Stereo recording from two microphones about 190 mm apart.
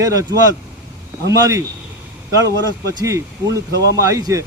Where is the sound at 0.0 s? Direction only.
15° right (ahead or behind).